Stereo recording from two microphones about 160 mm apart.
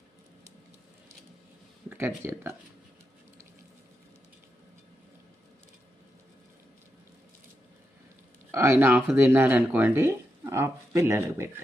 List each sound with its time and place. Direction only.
1.9 s speech: 15° right (ahead or behind)
8.5 s speech: 15° right (ahead or behind)